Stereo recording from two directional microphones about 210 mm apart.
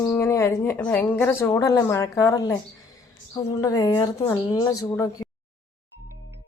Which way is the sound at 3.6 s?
20° left (ahead or behind).